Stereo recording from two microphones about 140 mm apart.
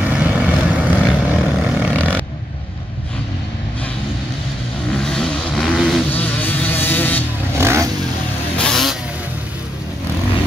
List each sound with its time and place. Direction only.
0.0 s vehicle: 10° right (ahead or behind)
2.0 s vehicle: 10° left (ahead or behind)
4.9 s vehicle: 5° left (ahead or behind)
6.0 s vehicle: 10° left (ahead or behind)
7.5 s vehicle: 20° right (ahead or behind)
8.5 s vehicle: 5° left (ahead or behind)